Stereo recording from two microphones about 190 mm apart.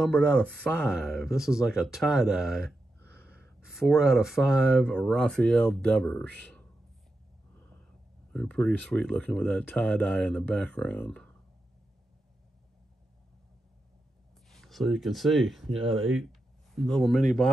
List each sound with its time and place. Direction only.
0.2 s speech: 5° left (ahead or behind)
6.4 s a sound: 5° left (ahead or behind)
8.3 s speech: 5° left (ahead or behind)
14.5 s speech: centre (ahead or behind)
15.9 s speech: 90° right
16.7 s speech: centre (ahead or behind)